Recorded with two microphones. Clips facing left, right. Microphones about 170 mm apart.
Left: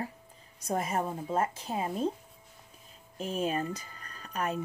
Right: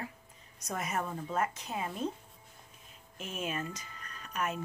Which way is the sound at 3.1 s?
35° left (ahead or behind).